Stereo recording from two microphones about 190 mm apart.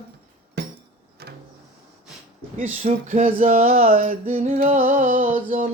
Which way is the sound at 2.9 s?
40° right (ahead or behind).